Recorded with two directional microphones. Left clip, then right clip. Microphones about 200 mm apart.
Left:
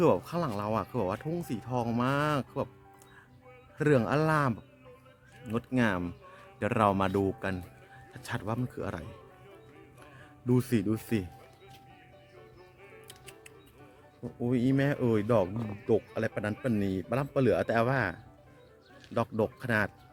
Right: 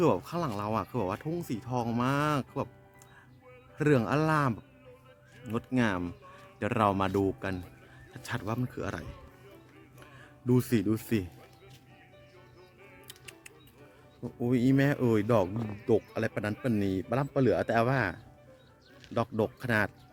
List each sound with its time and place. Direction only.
0.0 s speech: centre (ahead or behind)
3.8 s a man's voice: centre (ahead or behind)
13.1 s music: 15° right (ahead or behind)
14.4 s speech: 15° right (ahead or behind)
15.4 s speech: centre (ahead or behind)
15.9 s speech: 20° right (ahead or behind)